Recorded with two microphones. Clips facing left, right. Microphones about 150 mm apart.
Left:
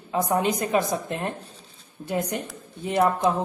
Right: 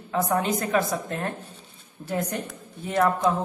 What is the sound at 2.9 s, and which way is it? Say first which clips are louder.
Speech: left 1 dB; 15° left (ahead or behind).